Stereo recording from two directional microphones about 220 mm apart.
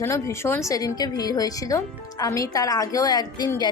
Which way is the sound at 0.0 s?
10° left (ahead or behind).